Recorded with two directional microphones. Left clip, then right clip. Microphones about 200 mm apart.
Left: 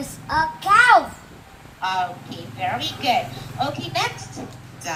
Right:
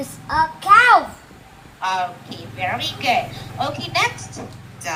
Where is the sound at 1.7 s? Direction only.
15° right (ahead or behind).